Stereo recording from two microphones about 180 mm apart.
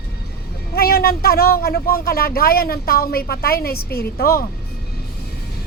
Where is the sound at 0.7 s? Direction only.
60° left (ahead or behind).